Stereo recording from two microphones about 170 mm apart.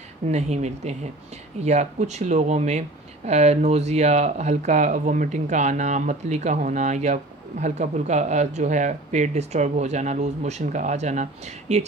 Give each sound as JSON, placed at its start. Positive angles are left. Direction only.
{"t": 0.3, "sound": "speech", "side_deg": -40}